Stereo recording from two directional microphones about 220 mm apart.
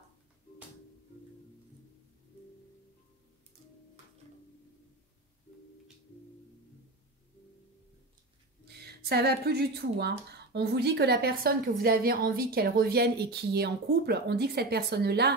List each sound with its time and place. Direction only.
8.8 s speech: 45° right (ahead or behind)